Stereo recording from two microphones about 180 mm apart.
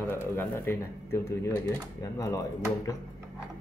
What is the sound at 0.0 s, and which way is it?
Speech, 10° left (ahead or behind).